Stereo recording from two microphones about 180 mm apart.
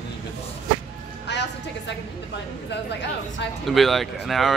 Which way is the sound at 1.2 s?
75° left (ahead or behind).